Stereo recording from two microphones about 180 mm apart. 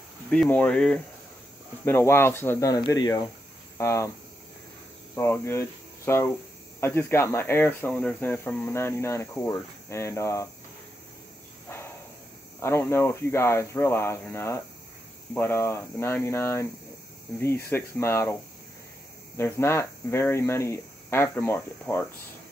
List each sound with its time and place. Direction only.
0.3 s speech: 5° left (ahead or behind)
5.1 s speech: 15° left (ahead or behind)
12.6 s speech: 15° left (ahead or behind)